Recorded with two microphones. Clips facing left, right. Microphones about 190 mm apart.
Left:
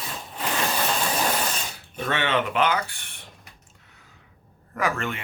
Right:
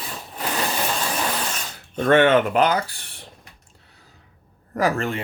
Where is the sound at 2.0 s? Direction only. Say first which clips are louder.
Right 9 dB; 50° right (ahead or behind); by 3.2 s 35° right (ahead or behind).